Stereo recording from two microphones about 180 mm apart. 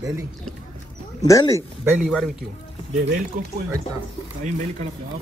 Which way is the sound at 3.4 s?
50° right (ahead or behind).